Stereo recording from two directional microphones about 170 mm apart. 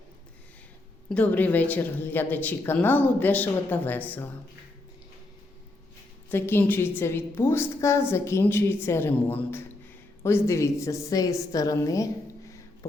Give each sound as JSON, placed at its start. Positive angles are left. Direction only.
{"t": 1.1, "sound": "a woman's voice", "side_deg": 10}
{"t": 6.3, "sound": "a woman's voice", "side_deg": 15}
{"t": 12.5, "sound": "a sound", "side_deg": 20}